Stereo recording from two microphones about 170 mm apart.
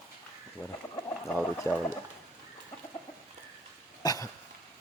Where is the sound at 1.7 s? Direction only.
15° left (ahead or behind).